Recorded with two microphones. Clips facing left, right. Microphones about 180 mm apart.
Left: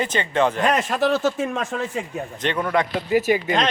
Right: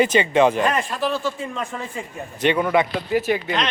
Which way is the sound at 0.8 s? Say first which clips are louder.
Left 4 dB; 80° left.